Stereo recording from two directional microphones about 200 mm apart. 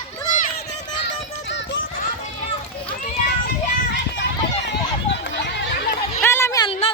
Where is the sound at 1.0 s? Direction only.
65° left (ahead or behind).